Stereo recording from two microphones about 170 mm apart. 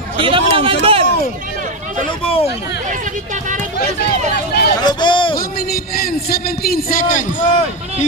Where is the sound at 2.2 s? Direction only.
35° left (ahead or behind).